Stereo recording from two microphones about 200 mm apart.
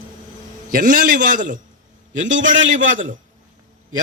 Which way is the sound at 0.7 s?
40° right (ahead or behind).